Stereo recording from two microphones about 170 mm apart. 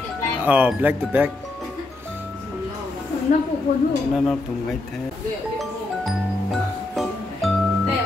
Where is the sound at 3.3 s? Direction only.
50° left (ahead or behind).